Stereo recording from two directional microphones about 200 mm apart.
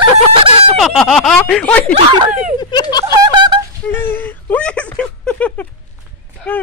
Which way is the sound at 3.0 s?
20° right (ahead or behind).